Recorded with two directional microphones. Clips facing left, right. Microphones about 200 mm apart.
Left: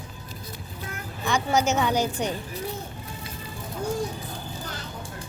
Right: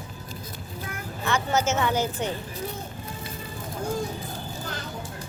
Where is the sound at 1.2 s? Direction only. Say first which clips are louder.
Left 1 dB; 15° left (ahead or behind).